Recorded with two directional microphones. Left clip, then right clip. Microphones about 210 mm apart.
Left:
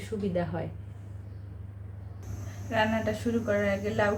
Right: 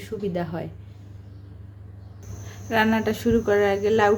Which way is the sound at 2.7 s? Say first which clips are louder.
Right 6 dB; 55° right (ahead or behind).